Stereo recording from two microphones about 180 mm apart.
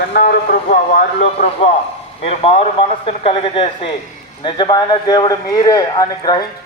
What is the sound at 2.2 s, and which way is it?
Speech, 35° left (ahead or behind).